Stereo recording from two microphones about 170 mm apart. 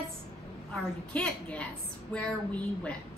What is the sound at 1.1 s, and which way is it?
A woman's voice, 5° left (ahead or behind).